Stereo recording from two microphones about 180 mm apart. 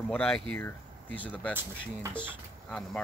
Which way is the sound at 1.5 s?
15° right (ahead or behind).